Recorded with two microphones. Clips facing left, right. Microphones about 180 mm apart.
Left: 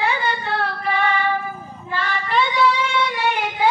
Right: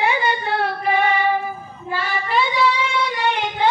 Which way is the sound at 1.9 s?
10° right (ahead or behind).